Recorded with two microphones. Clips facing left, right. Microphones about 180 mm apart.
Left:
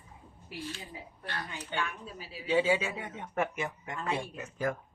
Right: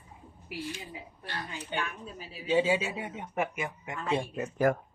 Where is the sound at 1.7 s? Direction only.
20° right (ahead or behind).